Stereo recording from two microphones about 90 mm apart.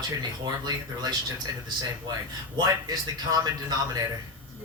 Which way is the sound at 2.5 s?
50° right (ahead or behind).